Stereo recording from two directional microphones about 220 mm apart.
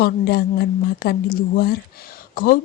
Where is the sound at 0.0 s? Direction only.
45° left (ahead or behind).